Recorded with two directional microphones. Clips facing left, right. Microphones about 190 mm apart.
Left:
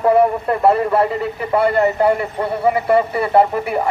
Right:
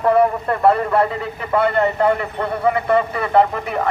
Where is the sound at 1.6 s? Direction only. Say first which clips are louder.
Left 2 dB; 5° left (ahead or behind).